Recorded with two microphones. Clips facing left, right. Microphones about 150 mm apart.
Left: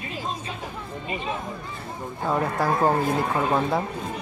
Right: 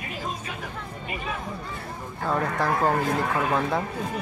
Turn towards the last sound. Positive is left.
turn(degrees=20)  # may be behind; listen again after turning